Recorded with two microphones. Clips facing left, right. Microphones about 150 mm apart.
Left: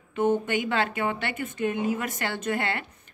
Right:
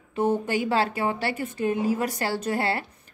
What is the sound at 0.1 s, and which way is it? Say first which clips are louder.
Speech: even; 35° right (ahead or behind).